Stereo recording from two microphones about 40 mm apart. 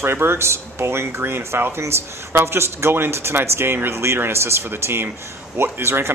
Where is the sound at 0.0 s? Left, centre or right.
Right.